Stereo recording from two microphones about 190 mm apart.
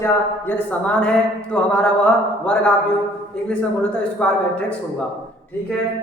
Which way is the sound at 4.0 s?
5° left (ahead or behind).